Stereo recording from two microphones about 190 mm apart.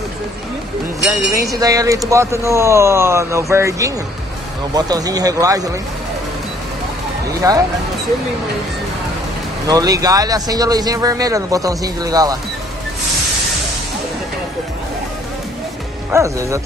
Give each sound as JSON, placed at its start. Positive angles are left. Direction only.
{"t": 1.6, "sound": "speech", "side_deg": -20}
{"t": 7.4, "sound": "speech", "side_deg": -15}
{"t": 9.7, "sound": "speech", "side_deg": -20}
{"t": 16.1, "sound": "speech", "side_deg": -15}